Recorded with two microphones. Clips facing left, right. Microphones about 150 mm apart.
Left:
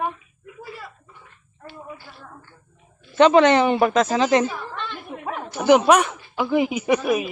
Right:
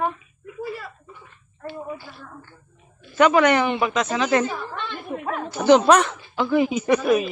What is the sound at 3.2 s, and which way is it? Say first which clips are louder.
Speech: left 3 dB; 25° left (ahead or behind).